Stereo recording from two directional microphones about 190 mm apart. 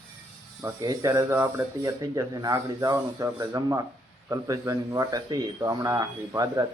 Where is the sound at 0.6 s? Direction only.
20° right (ahead or behind).